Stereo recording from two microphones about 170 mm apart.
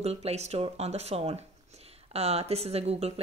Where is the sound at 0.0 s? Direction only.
40° right (ahead or behind).